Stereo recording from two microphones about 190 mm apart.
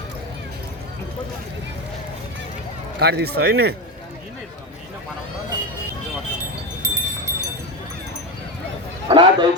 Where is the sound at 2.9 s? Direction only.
60° right (ahead or behind).